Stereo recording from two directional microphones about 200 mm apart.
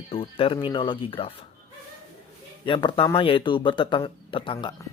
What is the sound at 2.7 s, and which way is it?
Speech, 25° left (ahead or behind).